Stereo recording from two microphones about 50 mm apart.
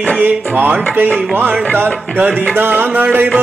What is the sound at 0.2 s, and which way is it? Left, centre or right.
Music, right.